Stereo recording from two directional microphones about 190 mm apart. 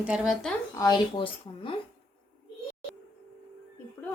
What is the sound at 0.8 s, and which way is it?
Speech, 20° left (ahead or behind).